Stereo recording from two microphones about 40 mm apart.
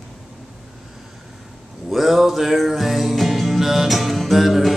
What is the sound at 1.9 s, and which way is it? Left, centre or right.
Music, centre.